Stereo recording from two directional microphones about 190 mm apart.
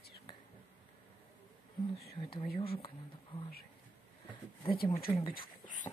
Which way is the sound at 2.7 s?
30° left (ahead or behind).